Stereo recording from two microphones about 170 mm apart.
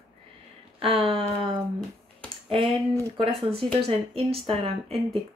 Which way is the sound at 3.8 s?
35° right (ahead or behind).